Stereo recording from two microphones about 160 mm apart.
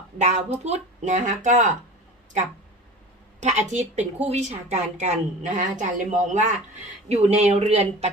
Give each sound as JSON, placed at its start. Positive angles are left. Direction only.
{"t": 0.2, "sound": "a woman's voice", "side_deg": -45}
{"t": 3.4, "sound": "a woman's voice", "side_deg": -45}